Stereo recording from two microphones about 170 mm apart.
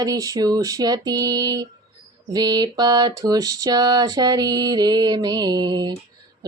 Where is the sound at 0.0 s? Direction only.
20° right (ahead or behind).